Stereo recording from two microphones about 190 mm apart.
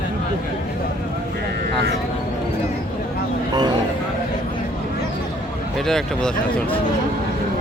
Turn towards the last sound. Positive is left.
turn(degrees=0)  # may be behind; listen again after turning